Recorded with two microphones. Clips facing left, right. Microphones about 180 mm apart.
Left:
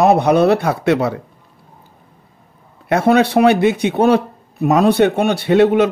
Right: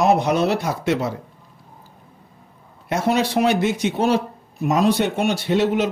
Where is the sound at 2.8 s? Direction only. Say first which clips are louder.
Left 7 dB; 60° left (ahead or behind).